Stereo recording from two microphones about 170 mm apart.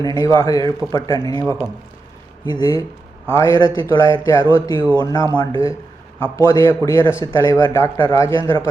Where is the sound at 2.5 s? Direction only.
20° left (ahead or behind).